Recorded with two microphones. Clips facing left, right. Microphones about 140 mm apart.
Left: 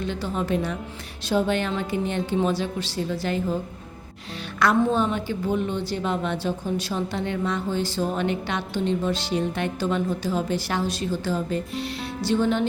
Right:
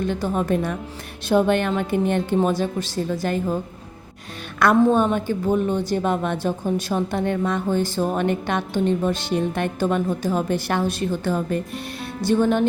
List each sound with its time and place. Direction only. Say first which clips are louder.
0.0 s a woman's voice: right 4 dB; 50° right (ahead or behind)
4.6 s a woman's voice: right 4 dB; 50° right (ahead or behind)